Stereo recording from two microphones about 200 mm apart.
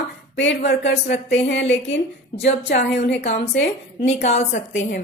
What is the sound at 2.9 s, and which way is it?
Speech, 55° left (ahead or behind).